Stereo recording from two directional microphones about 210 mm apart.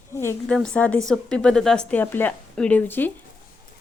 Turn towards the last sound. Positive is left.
turn(degrees=10)  # may be behind; listen again after turning